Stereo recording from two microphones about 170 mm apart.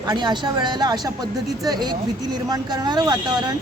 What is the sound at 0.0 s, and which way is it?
A woman's voice, 25° right (ahead or behind).